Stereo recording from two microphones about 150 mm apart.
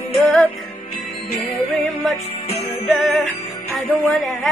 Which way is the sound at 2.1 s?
45° left (ahead or behind).